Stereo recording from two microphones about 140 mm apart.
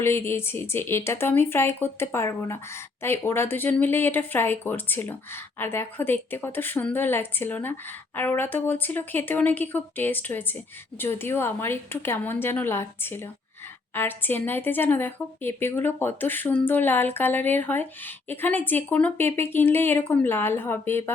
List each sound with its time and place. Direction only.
0.0 s speech: 15° left (ahead or behind)